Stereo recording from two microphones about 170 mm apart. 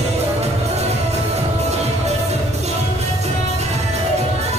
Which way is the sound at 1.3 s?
40° right (ahead or behind).